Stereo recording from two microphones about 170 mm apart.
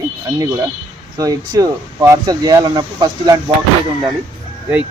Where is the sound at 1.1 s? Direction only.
20° right (ahead or behind).